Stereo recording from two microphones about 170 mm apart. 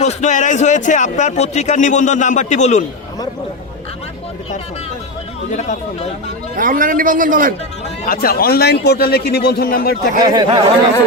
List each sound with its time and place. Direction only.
0.0 s a man's voice: 40° left (ahead or behind)
5.5 s a man's voice: 45° left (ahead or behind)
6.6 s a man's voice: 50° right (ahead or behind)
8.0 s a man's voice: 60° left (ahead or behind)
10.2 s speech: 25° right (ahead or behind)